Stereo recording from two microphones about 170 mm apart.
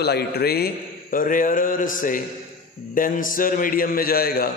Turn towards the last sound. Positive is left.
turn(degrees=65)  # may be behind; listen again after turning